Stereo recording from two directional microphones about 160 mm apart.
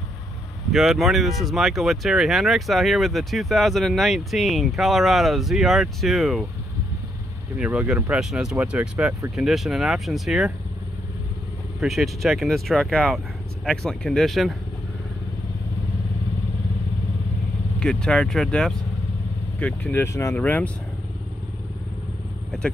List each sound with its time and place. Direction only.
0.7 s speech: centre (ahead or behind)
7.5 s speech: 5° right (ahead or behind)
11.8 s speech: centre (ahead or behind)
17.7 s speech: 5° left (ahead or behind)